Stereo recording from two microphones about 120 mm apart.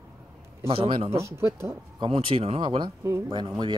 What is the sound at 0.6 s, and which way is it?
Speech, 50° right (ahead or behind).